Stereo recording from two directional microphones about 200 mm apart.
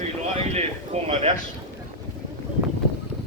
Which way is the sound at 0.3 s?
30° right (ahead or behind).